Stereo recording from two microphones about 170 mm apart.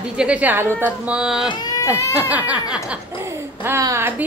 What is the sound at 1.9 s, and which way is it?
Speech, 15° left (ahead or behind).